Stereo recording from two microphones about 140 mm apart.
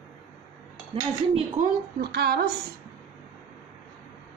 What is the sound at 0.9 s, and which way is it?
Speech, 35° right (ahead or behind).